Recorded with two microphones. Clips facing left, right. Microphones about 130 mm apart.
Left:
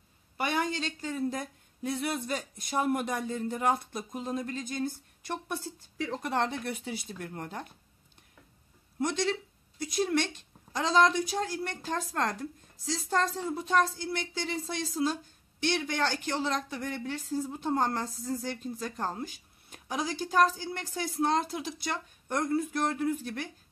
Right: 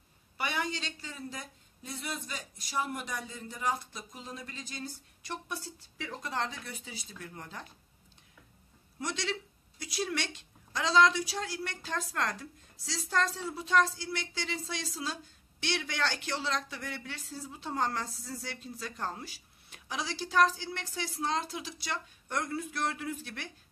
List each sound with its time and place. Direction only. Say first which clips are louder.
0.4 s a woman's voice: left 4 dB; 45° left (ahead or behind)
9.0 s a woman's voice: left 6 dB; 50° left (ahead or behind)
22.3 s speech: left 6 dB; 20° left (ahead or behind)
22.6 s a woman's voice: left 5 dB; 45° left (ahead or behind)